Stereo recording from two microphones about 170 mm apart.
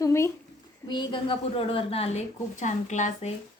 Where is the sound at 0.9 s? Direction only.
30° left (ahead or behind); by 3.3 s 45° left (ahead or behind).